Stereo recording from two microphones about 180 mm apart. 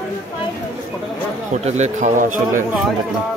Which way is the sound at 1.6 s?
40° right (ahead or behind).